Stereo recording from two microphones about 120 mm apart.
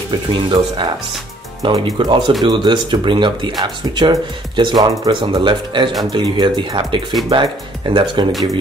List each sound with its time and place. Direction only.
0.3 s speech: 45° right (ahead or behind)